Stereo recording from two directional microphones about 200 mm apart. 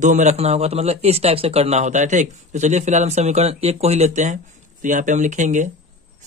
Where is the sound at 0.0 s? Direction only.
35° right (ahead or behind).